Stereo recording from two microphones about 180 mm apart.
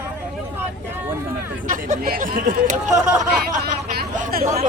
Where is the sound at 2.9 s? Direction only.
5° right (ahead or behind).